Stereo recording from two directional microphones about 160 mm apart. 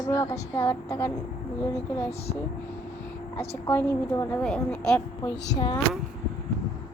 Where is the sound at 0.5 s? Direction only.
15° left (ahead or behind).